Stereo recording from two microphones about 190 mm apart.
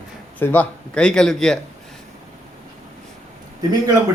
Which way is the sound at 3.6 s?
20° right (ahead or behind).